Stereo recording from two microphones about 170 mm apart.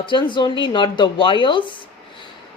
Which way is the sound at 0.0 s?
30° left (ahead or behind).